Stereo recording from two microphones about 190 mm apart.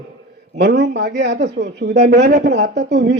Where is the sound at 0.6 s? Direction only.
65° right (ahead or behind).